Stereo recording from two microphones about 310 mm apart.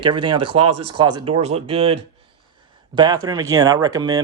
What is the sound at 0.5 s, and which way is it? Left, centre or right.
Speech, right.